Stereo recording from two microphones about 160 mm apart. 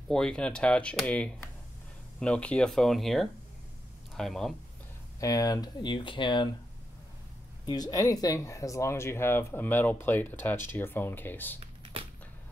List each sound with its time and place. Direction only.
0.1 s speech: 5° left (ahead or behind)
5.2 s speech: 25° left (ahead or behind)
7.6 s speech: 25° left (ahead or behind)
11.6 s typing: 35° right (ahead or behind)